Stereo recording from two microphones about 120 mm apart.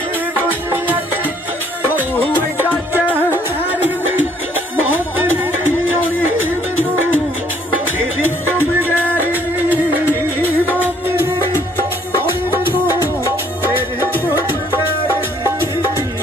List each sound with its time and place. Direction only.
0.4 s music: 15° right (ahead or behind)
4.7 s music: 15° right (ahead or behind)
6.8 s music: 15° left (ahead or behind)
8.5 s music: 15° left (ahead or behind)
9.2 s music: 15° right (ahead or behind)